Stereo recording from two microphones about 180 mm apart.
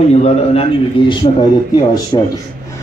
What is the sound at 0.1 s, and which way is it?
A man's voice, 35° left (ahead or behind).